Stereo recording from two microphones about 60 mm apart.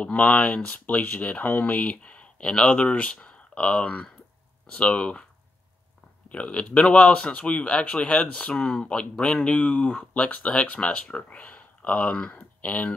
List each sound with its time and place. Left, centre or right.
0.0 s speech: left
6.2 s speech: centre